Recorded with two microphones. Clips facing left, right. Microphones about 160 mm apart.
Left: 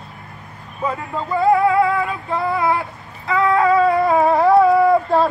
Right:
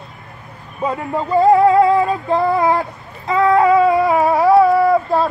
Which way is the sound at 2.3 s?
40° right (ahead or behind).